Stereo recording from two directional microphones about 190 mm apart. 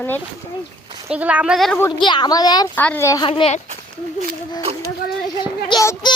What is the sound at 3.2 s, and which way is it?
Speech, 30° left (ahead or behind).